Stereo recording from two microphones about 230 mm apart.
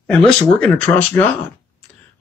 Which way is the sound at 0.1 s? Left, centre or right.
Centre.